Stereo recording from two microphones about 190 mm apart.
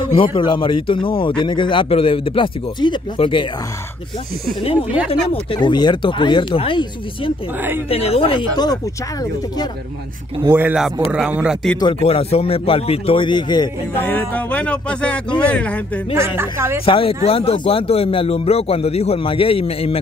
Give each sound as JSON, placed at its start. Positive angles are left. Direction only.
{"t": 0.0, "sound": "speech", "side_deg": 25}
{"t": 5.3, "sound": "speech", "side_deg": 25}
{"t": 10.4, "sound": "speech", "side_deg": -10}
{"t": 11.8, "sound": "speech", "side_deg": 30}
{"t": 13.9, "sound": "speech", "side_deg": 10}
{"t": 16.3, "sound": "speech", "side_deg": -10}
{"t": 16.8, "sound": "speech", "side_deg": 30}